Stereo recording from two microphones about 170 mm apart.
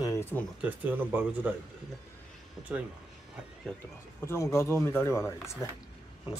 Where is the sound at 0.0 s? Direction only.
15° left (ahead or behind).